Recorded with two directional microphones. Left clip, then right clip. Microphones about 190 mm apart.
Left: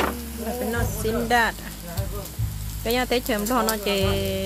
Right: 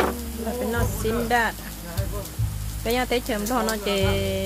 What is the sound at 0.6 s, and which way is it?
Speech, centre (ahead or behind).